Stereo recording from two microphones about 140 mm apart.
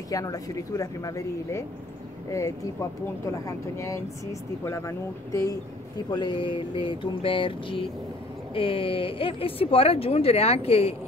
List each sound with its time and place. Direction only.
0.1 s speech: 25° left (ahead or behind); by 11.0 s 45° left (ahead or behind)